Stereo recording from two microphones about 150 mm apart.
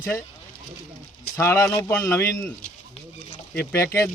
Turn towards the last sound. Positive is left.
turn(degrees=20)  # may be behind; listen again after turning